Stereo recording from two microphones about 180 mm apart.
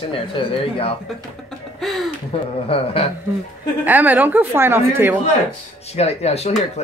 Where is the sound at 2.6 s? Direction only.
30° left (ahead or behind).